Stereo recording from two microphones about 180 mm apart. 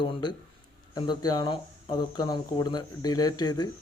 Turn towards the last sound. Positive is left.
turn(degrees=20)  # may be behind; listen again after turning